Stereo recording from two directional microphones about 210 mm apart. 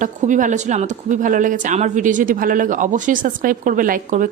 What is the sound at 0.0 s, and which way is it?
Speech, 35° right (ahead or behind).